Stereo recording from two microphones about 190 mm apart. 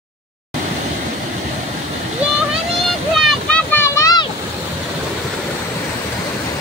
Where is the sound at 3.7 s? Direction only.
15° left (ahead or behind).